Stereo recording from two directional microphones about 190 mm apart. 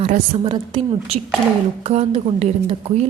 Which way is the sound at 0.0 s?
30° right (ahead or behind).